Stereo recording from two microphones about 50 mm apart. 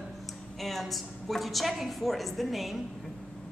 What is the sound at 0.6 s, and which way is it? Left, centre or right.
A woman's voice, centre.